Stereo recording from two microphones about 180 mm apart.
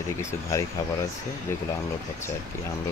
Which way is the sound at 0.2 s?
15° left (ahead or behind).